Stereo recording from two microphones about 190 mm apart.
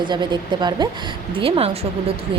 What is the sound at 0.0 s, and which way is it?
Speech, 25° right (ahead or behind).